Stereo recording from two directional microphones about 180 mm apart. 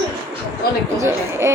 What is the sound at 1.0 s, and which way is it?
Child singing, 15° right (ahead or behind).